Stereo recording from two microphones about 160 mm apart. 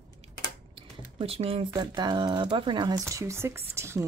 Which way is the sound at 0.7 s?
35° right (ahead or behind).